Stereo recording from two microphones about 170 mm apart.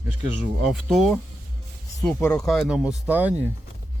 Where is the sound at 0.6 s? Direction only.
Centre (ahead or behind).